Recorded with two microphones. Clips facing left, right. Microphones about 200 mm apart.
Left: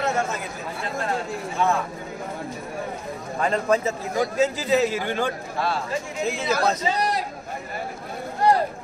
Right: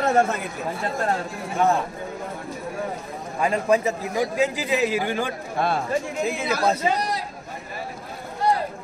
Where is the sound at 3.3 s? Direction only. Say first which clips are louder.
Right 1 dB; 10° right (ahead or behind).